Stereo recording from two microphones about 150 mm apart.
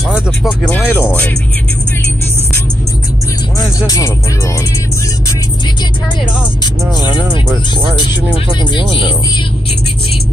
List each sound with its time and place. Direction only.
0.1 s speech: 5° left (ahead or behind)
3.5 s speech: 20° left (ahead or behind)
6.6 s speech: 30° left (ahead or behind)
8.7 s speech: 35° left (ahead or behind)